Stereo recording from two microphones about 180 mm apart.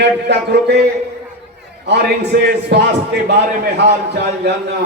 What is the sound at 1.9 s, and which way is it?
A man's voice, 65° right (ahead or behind).